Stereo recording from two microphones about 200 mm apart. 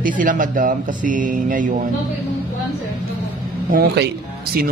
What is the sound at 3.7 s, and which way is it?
Speech, 55° right (ahead or behind).